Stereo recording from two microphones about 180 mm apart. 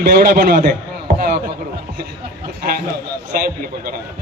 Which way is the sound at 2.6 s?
55° right (ahead or behind).